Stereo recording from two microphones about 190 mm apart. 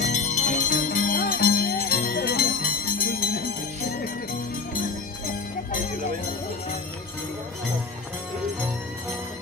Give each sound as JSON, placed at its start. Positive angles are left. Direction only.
{"t": 0.0, "sound": "music", "side_deg": 40}